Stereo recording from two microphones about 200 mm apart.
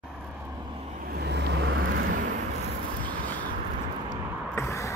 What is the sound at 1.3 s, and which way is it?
Vehicle, 60° right (ahead or behind).